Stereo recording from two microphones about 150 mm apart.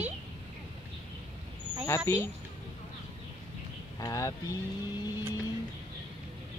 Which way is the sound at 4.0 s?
20° left (ahead or behind).